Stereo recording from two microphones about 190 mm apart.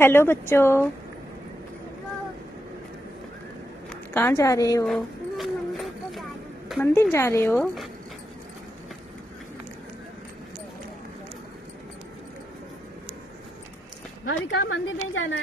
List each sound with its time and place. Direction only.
0.0 s speech: 10° left (ahead or behind)
3.9 s a woman's voice: 10° left (ahead or behind)
4.8 s a sound: centre (ahead or behind)
6.8 s speech: 15° left (ahead or behind)
14.2 s a woman's voice: 90° left